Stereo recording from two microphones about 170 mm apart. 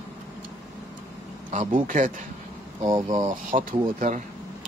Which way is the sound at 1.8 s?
50° right (ahead or behind).